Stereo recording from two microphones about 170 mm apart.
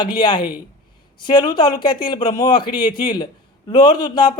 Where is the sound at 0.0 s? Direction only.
25° left (ahead or behind).